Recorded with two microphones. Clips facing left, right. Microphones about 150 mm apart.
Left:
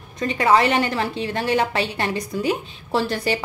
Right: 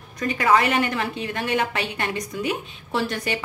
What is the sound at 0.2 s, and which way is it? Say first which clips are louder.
A woman's voice: left 2 dB; 30° left (ahead or behind).